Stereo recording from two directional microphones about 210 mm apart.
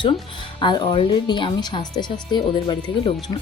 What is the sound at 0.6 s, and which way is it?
Speech, 20° left (ahead or behind).